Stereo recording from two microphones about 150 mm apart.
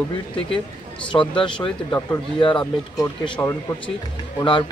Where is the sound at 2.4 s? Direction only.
30° left (ahead or behind).